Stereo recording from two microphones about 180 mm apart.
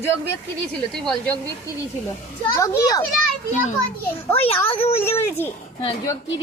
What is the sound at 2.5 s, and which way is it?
Speech, 20° left (ahead or behind).